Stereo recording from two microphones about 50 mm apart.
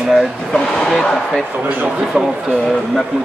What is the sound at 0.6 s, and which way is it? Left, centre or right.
Speech, centre.